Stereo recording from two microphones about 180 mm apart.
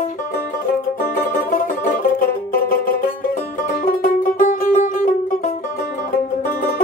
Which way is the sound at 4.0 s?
45° left (ahead or behind).